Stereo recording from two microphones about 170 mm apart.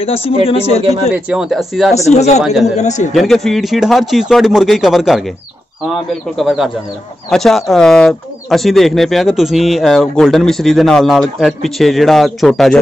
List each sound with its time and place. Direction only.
0.0 s speech: 35° left (ahead or behind)
1.1 s speech: 5° right (ahead or behind)
2.0 s a man's voice: 40° left (ahead or behind)
3.1 s speech: centre (ahead or behind)
6.3 s speech: centre (ahead or behind)